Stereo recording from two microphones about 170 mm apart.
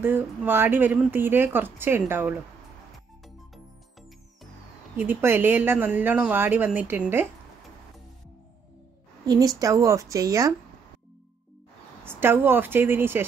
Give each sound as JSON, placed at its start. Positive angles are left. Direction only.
{"t": 0.0, "sound": "speech", "side_deg": -10}
{"t": 4.9, "sound": "speech", "side_deg": -10}
{"t": 9.2, "sound": "a woman's voice", "side_deg": -20}
{"t": 12.0, "sound": "speech", "side_deg": -15}